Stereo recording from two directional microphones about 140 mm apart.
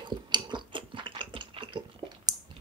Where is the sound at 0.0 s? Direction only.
35° right (ahead or behind).